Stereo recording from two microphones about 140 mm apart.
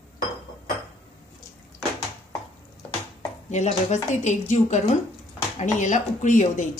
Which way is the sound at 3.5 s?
55° left (ahead or behind).